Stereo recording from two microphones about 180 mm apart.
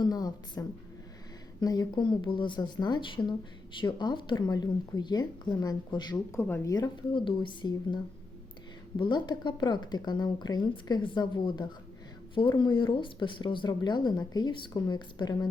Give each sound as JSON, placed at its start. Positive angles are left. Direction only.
{"t": 0.0, "sound": "a woman's voice", "side_deg": 20}
{"t": 1.6, "sound": "a woman's voice", "side_deg": 20}